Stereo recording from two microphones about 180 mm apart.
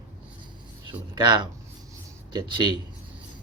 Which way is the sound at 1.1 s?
25° right (ahead or behind).